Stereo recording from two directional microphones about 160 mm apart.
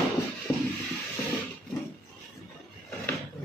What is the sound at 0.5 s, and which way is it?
Music, 10° left (ahead or behind).